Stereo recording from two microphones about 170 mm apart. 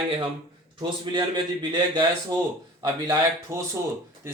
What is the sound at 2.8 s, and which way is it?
Speech, 15° right (ahead or behind).